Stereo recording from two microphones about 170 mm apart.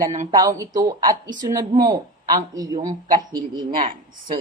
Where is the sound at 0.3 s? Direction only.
20° right (ahead or behind).